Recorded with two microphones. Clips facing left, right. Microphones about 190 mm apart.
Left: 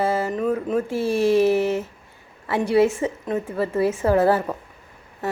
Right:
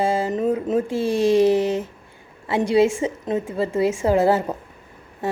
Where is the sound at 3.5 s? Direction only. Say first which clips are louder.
Right 1 dB; 25° right (ahead or behind).